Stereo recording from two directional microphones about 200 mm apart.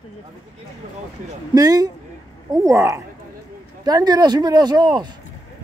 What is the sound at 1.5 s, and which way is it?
Speech, 20° right (ahead or behind).